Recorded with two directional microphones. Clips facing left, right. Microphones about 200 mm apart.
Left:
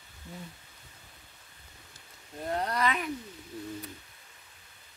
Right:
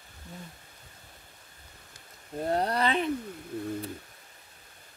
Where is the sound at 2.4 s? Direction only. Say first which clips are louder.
Right 3 dB; 35° right (ahead or behind).